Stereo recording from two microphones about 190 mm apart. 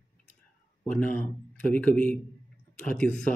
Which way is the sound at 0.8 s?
5° left (ahead or behind).